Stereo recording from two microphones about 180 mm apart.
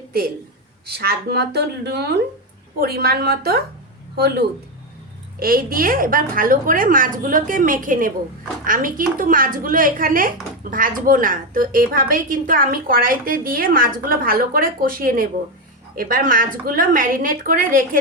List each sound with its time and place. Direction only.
0.9 s speech: 65° right (ahead or behind)
5.4 s a woman's voice: 55° right (ahead or behind)